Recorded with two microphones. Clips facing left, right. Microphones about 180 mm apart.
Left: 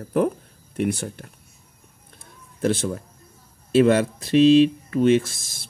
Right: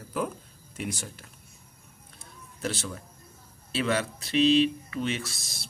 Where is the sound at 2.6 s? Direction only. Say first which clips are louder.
Left 11 dB; 50° left (ahead or behind).